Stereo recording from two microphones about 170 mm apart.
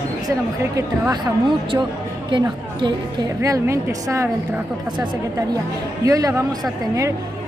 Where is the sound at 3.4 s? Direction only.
15° right (ahead or behind).